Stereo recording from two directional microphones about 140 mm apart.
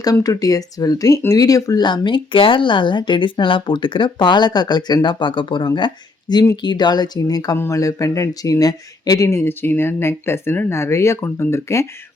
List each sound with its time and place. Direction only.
0.0 s speech: 25° left (ahead or behind)